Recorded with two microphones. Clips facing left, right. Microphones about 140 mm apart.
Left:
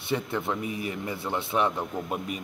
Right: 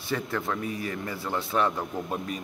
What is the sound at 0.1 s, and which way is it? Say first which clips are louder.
A man's voice: left 1 dB; 20° left (ahead or behind).